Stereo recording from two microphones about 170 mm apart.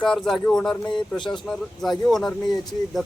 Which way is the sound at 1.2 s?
25° left (ahead or behind).